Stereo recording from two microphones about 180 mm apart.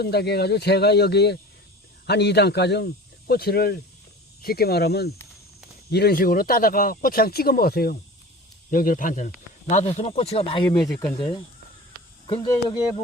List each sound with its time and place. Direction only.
0.0 s speech: 65° left (ahead or behind); by 10.7 s 30° left (ahead or behind)
10.8 s speech: 5° left (ahead or behind)
12.2 s speech: 30° left (ahead or behind)